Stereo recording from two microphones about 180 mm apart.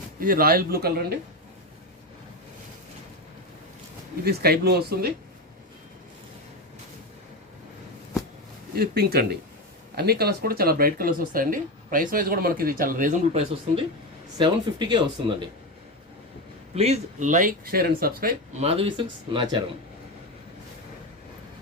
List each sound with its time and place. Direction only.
0.2 s speech: 55° right (ahead or behind)
4.2 s speech: 60° right (ahead or behind)
8.7 s speech: 60° right (ahead or behind); by 15.4 s 25° right (ahead or behind)
16.7 s speech: 35° right (ahead or behind); by 18.3 s 55° right (ahead or behind)
18.6 s speech: 30° right (ahead or behind)